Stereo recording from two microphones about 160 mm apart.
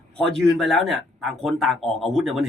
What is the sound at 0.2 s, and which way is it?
Speech, 5° left (ahead or behind).